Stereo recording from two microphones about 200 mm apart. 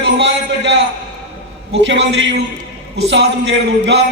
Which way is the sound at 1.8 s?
70° right (ahead or behind).